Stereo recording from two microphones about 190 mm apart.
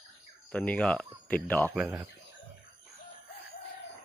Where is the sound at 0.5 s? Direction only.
5° left (ahead or behind).